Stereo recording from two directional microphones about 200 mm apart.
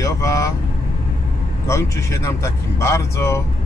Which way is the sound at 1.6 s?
15° left (ahead or behind).